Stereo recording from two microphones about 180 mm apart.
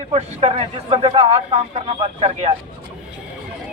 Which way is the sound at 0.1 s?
35° right (ahead or behind).